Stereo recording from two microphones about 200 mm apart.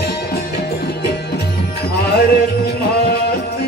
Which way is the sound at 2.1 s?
50° left (ahead or behind).